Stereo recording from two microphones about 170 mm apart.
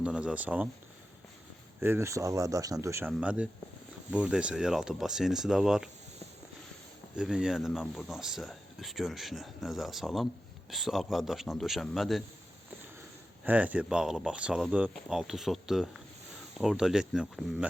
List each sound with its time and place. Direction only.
0.0 s speech: 5° right (ahead or behind)
1.8 s speech: 15° right (ahead or behind)
3.1 s speech: 5° right (ahead or behind)
7.2 s speech: 5° right (ahead or behind)
13.4 s speech: 10° right (ahead or behind)